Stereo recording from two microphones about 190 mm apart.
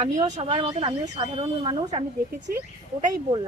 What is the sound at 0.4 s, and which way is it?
Speech, 30° right (ahead or behind).